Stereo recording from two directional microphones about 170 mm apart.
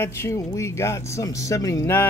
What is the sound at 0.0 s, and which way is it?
Speech, 15° left (ahead or behind).